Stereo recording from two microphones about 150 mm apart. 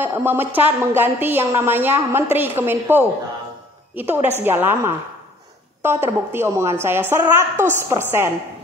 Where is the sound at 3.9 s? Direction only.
10° right (ahead or behind).